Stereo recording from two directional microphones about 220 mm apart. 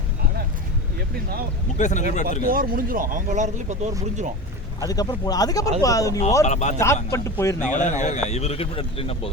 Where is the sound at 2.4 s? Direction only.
40° right (ahead or behind).